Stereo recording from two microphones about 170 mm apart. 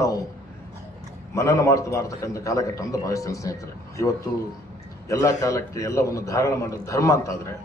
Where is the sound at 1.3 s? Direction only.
15° left (ahead or behind).